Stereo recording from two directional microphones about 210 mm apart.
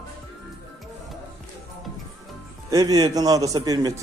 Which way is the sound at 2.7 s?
20° right (ahead or behind).